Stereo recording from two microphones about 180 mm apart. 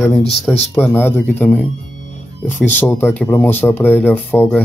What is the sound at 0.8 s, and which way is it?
Speech, 10° left (ahead or behind).